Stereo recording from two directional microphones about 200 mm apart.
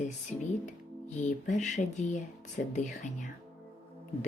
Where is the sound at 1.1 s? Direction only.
40° left (ahead or behind).